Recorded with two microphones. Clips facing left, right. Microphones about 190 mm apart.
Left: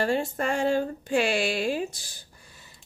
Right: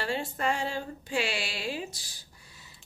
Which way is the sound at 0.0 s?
45° left (ahead or behind).